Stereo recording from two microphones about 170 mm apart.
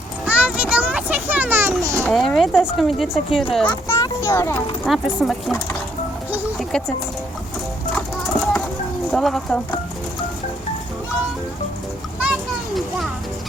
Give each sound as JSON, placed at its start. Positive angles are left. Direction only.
{"t": 0.3, "sound": "children playing", "side_deg": -5}
{"t": 2.0, "sound": "a child's voice", "side_deg": 0}
{"t": 4.9, "sound": "speech", "side_deg": 0}
{"t": 6.3, "sound": "music", "side_deg": 0}
{"t": 7.9, "sound": "a sound", "side_deg": 5}
{"t": 9.1, "sound": "speech", "side_deg": 0}
{"t": 12.2, "sound": "a sound", "side_deg": -5}